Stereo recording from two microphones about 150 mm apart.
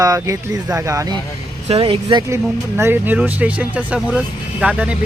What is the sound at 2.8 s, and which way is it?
Speech, 15° right (ahead or behind).